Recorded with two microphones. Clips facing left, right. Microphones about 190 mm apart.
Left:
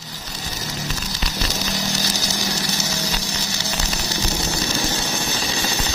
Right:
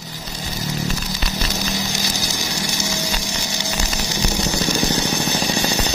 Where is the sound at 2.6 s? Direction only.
15° right (ahead or behind).